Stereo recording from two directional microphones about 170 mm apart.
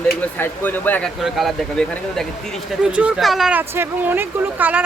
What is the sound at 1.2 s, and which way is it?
Speech, centre (ahead or behind).